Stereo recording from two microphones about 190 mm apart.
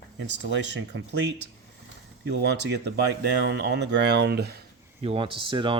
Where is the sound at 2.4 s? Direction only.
60° right (ahead or behind).